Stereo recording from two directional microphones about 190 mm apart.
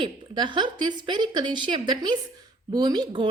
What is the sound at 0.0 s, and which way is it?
A woman's voice, 25° right (ahead or behind).